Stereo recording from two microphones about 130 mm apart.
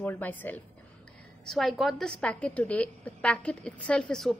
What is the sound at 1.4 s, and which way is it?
A woman's voice, centre (ahead or behind).